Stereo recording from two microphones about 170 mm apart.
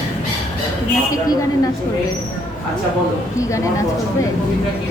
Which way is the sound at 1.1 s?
20° left (ahead or behind).